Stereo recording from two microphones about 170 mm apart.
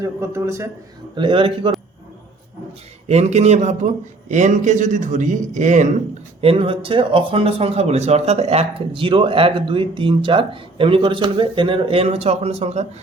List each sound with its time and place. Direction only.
0.0 s a man's voice: 15° right (ahead or behind)
1.1 s a man's voice: 30° right (ahead or behind)
3.1 s a man's voice: 40° right (ahead or behind)
6.4 s speech: 30° right (ahead or behind)